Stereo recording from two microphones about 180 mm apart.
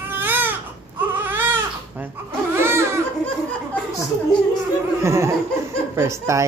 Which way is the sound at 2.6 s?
15° right (ahead or behind).